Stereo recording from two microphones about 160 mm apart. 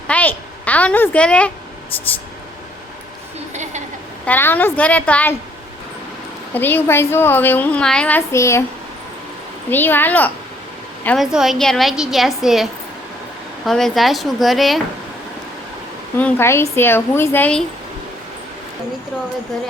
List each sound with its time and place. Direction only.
0.1 s a child's voice: 10° left (ahead or behind)
3.5 s a sound: 45° right (ahead or behind)
4.3 s a woman's voice: 10° left (ahead or behind)
6.5 s a woman's voice: 10° left (ahead or behind)
9.6 s a woman's voice: 10° left (ahead or behind)
11.2 s a woman's voice: centre (ahead or behind)
13.7 s a woman's voice: centre (ahead or behind)
16.1 s a woman's voice: 15° left (ahead or behind)